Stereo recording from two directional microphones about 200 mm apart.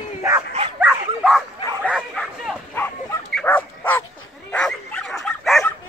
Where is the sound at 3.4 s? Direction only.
10° left (ahead or behind).